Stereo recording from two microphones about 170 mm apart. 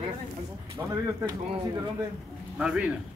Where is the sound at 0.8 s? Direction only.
15° right (ahead or behind).